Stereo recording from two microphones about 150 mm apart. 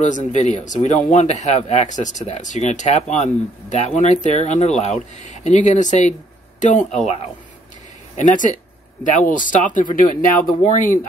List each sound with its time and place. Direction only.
0.0 s speech: 55° left (ahead or behind)
8.2 s speech: 55° left (ahead or behind)